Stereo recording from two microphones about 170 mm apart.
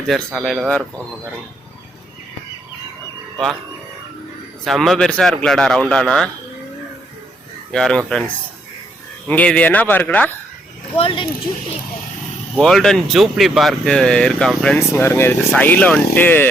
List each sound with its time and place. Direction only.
0.3 s speech: 5° left (ahead or behind)
3.3 s speech: centre (ahead or behind)
4.6 s speech: centre (ahead or behind)
7.7 s speech: 5° left (ahead or behind)
9.2 s speech: 10° left (ahead or behind)
10.9 s speech: 30° left (ahead or behind)
12.5 s speech: 5° left (ahead or behind)